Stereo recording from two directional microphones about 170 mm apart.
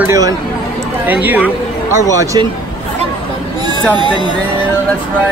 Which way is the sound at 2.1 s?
20° right (ahead or behind).